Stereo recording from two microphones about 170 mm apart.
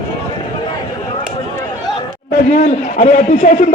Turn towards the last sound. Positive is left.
turn(degrees=40)  # may be behind; listen again after turning